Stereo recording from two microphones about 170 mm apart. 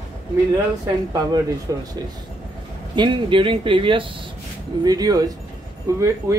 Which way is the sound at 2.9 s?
30° right (ahead or behind).